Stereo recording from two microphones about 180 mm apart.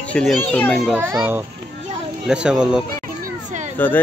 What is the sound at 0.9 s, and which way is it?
A child's voice, 10° right (ahead or behind).